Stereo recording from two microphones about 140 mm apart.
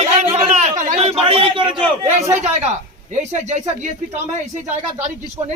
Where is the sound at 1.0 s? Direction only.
45° right (ahead or behind).